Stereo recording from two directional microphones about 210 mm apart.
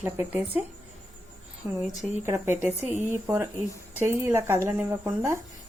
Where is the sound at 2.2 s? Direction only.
10° right (ahead or behind).